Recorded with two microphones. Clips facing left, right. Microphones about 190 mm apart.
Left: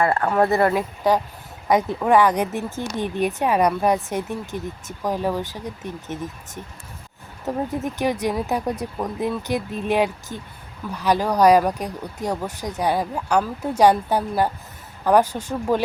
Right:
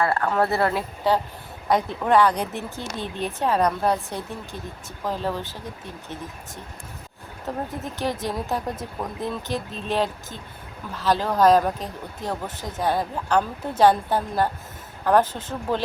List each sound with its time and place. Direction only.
0.0 s speech: 20° left (ahead or behind)
7.5 s speech: 15° left (ahead or behind)